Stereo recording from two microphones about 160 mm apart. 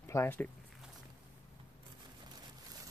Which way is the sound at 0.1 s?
15° left (ahead or behind).